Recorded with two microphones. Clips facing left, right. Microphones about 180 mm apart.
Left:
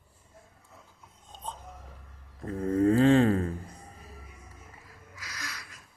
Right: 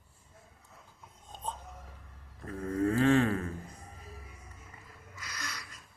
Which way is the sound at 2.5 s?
30° left (ahead or behind).